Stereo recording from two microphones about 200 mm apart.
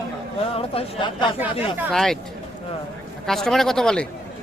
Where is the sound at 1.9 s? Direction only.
Centre (ahead or behind).